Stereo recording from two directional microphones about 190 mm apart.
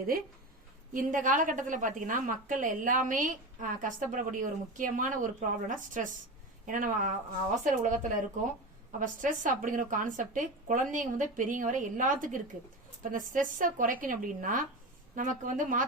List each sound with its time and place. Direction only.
0.9 s a woman's voice: 45° right (ahead or behind)
9.0 s a woman's voice: 45° right (ahead or behind)